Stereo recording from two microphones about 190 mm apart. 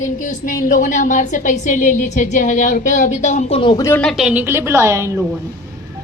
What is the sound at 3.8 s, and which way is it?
A woman's voice, 5° left (ahead or behind).